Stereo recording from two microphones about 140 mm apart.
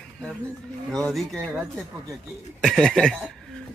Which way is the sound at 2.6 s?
5° left (ahead or behind).